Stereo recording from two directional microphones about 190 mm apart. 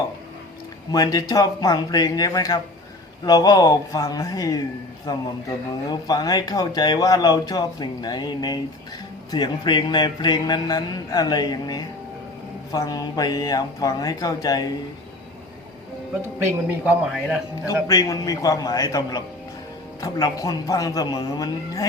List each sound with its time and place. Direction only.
0.9 s speech: 20° left (ahead or behind)
5.9 s speech: 20° left (ahead or behind)
16.2 s a man's voice: 10° right (ahead or behind)
17.8 s speech: 20° left (ahead or behind)